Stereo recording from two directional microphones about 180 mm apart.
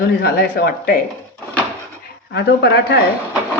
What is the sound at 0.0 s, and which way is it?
Speech, 60° left (ahead or behind).